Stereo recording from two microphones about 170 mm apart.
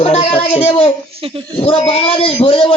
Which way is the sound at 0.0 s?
35° left (ahead or behind).